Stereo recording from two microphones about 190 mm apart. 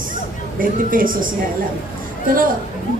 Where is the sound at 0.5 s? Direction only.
45° right (ahead or behind).